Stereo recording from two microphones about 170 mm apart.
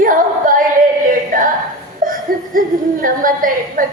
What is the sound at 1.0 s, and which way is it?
Singing, 50° right (ahead or behind).